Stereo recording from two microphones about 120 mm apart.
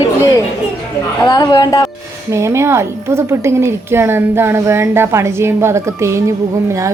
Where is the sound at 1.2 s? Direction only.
35° left (ahead or behind).